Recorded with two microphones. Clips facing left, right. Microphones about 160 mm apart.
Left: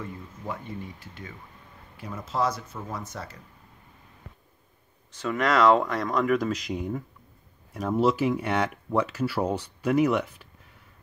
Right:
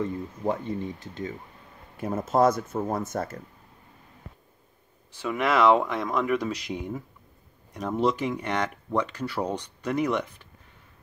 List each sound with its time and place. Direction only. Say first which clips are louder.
0.0 s speech: right 9 dB; 40° right (ahead or behind)
0.9 s speech: right 6 dB; 20° right (ahead or behind)
2.0 s speech: right 7 dB; 50° right (ahead or behind)
5.2 s speech: even; 10° right (ahead or behind); by 10.5 s 5° left (ahead or behind)